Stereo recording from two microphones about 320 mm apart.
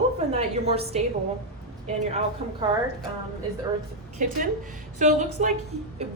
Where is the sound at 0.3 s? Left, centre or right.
Centre.